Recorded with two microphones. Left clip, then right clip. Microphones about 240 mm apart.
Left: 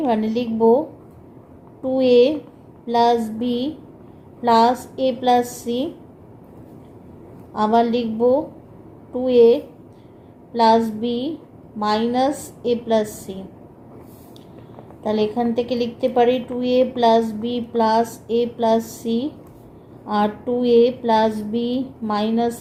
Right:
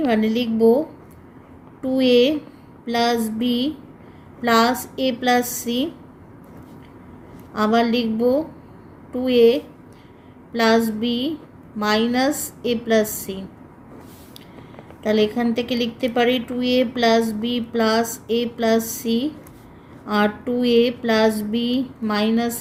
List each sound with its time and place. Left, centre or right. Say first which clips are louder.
0.0 s a woman's voice: even; right
1.8 s a woman's voice: left 2 dB; right
7.5 s a woman's voice: left 1 dB; right
10.6 s a woman's voice: left 2 dB; right
15.0 s a woman's voice: right 1 dB; right